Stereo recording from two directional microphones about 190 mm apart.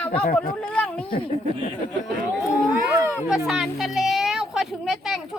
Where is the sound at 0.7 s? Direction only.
5° left (ahead or behind).